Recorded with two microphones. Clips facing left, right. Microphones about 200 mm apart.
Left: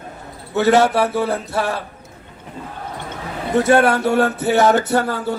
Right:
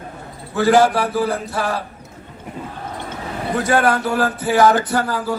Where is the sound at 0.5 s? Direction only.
25° left (ahead or behind).